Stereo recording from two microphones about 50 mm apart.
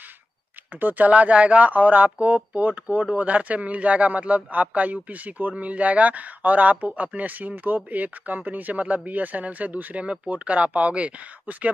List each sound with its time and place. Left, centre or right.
0.7 s speech: right